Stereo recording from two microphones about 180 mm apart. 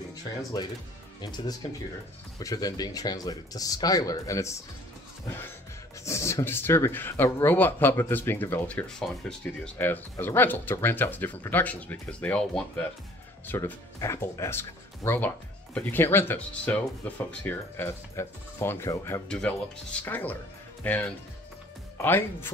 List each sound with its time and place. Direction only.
0.4 s speech: 20° left (ahead or behind)
6.0 s speech: 15° left (ahead or behind)
19.2 s speech: 5° left (ahead or behind)